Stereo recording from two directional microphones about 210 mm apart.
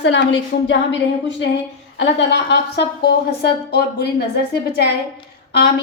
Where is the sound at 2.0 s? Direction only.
55° left (ahead or behind).